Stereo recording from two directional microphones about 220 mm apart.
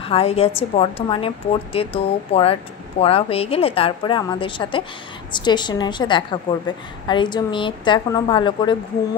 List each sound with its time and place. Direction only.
0.0 s a woman's voice: 25° left (ahead or behind)